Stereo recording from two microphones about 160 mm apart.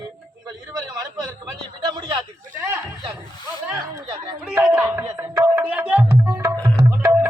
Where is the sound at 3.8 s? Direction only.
25° right (ahead or behind).